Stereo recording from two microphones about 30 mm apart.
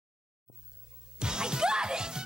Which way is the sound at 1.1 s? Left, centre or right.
Right.